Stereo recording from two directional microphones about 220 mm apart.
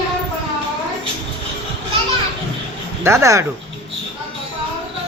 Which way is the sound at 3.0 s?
15° right (ahead or behind).